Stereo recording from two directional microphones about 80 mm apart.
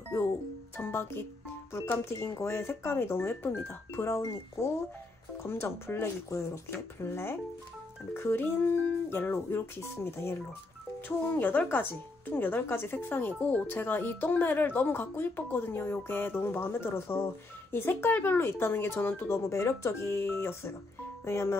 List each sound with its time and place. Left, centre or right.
0.7 s speech: left
5.4 s speech: left